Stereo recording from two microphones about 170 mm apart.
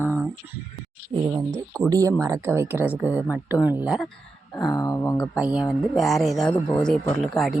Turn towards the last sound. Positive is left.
turn(degrees=0)  # may be behind; listen again after turning